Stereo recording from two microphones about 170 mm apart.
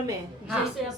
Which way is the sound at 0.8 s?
Centre (ahead or behind).